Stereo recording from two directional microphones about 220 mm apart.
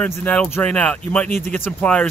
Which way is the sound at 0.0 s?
5° left (ahead or behind).